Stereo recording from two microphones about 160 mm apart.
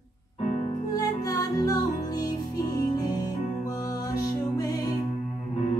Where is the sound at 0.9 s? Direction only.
25° left (ahead or behind).